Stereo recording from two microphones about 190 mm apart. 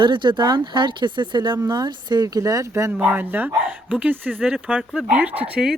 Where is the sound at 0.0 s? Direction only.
25° right (ahead or behind).